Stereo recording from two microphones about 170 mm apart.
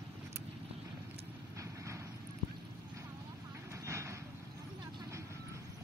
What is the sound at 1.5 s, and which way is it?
Vehicle, 20° right (ahead or behind).